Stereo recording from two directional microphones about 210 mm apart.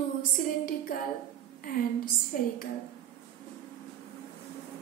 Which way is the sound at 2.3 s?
40° left (ahead or behind).